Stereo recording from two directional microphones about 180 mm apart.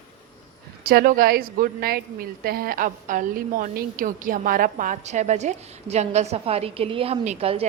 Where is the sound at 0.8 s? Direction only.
55° right (ahead or behind).